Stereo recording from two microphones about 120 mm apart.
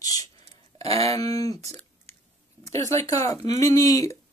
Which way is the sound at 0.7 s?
60° right (ahead or behind).